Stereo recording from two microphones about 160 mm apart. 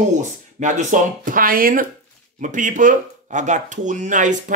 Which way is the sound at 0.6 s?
50° right (ahead or behind).